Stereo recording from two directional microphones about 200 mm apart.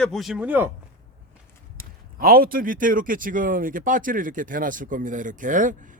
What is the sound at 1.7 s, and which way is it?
Speech, 45° right (ahead or behind).